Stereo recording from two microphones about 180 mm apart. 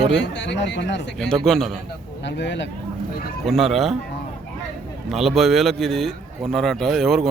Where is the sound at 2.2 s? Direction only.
80° left.